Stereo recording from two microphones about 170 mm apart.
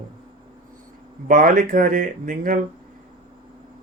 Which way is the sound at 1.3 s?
55° right (ahead or behind).